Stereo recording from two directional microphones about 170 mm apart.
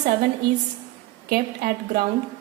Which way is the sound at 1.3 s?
65° right (ahead or behind).